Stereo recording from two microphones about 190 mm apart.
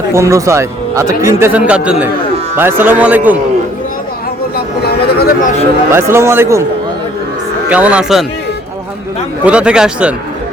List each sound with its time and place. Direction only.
0.1 s speech: 15° right (ahead or behind)
4.5 s a sound: 55° left (ahead or behind)
5.9 s speech: 15° right (ahead or behind)
7.7 s speech: 5° right (ahead or behind)
9.4 s speech: 5° right (ahead or behind)